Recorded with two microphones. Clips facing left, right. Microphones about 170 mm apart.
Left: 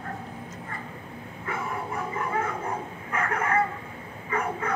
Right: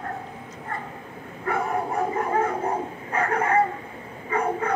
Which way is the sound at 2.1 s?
40° right (ahead or behind).